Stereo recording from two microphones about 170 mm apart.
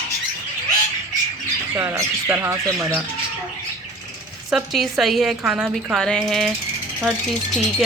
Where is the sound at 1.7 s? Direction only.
15° right (ahead or behind).